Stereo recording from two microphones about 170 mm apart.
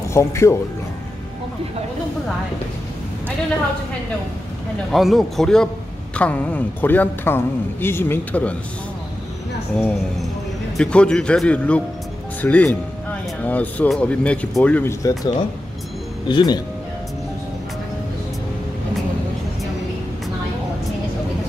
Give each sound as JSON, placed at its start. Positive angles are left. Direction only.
{"t": 0.1, "sound": "a man's voice", "side_deg": 15}
{"t": 4.9, "sound": "a man's voice", "side_deg": 0}
{"t": 10.8, "sound": "a man's voice", "side_deg": 5}